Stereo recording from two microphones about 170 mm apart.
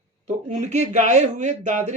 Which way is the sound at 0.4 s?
45° right (ahead or behind).